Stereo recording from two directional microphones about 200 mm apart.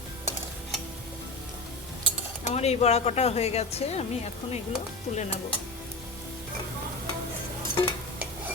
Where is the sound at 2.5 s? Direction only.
35° left (ahead or behind).